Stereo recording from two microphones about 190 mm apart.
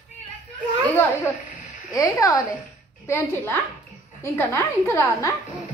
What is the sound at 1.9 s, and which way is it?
Speech, 15° left (ahead or behind).